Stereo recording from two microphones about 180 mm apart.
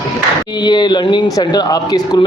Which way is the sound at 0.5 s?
25° left (ahead or behind).